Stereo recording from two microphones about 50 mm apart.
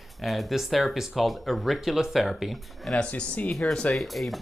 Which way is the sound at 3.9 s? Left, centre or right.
Centre.